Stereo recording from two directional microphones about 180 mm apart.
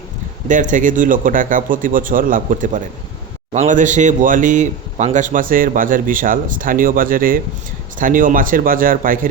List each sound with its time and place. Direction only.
0.4 s speech: 45° right (ahead or behind)